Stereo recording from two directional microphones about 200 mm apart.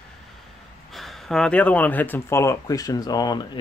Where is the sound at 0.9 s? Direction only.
Centre (ahead or behind).